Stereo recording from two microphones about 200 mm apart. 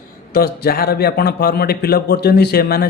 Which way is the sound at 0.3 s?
50° left (ahead or behind).